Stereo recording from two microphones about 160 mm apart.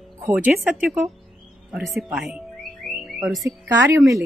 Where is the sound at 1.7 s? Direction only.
Centre (ahead or behind).